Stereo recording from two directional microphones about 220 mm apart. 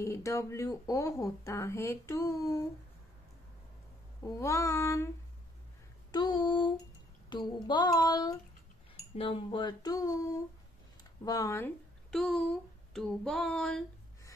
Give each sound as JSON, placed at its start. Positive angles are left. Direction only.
{"t": 0.0, "sound": "speech", "side_deg": 15}
{"t": 4.2, "sound": "speech", "side_deg": 15}
{"t": 6.1, "sound": "speech", "side_deg": 20}
{"t": 8.9, "sound": "cutlery", "side_deg": 25}
{"t": 11.2, "sound": "speech", "side_deg": 15}
{"t": 12.9, "sound": "a sound", "side_deg": 0}